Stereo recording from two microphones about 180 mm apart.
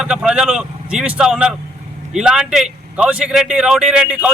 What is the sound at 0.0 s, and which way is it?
Speech, 5° right (ahead or behind).